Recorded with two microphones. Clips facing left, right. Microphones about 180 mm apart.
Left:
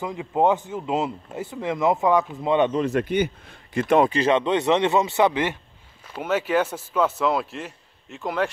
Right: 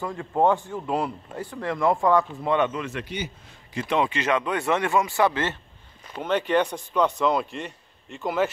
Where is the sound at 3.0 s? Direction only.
55° left (ahead or behind).